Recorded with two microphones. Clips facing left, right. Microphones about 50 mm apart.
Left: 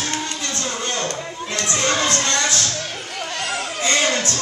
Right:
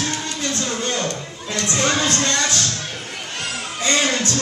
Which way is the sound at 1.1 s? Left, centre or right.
Left.